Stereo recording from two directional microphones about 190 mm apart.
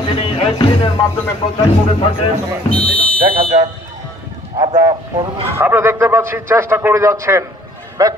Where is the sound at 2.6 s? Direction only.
5° left (ahead or behind).